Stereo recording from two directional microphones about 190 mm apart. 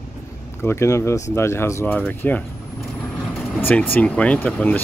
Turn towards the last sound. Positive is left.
turn(degrees=10)  # may be behind; listen again after turning